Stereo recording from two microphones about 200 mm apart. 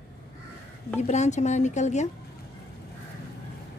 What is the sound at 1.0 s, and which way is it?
Speech, 35° left (ahead or behind).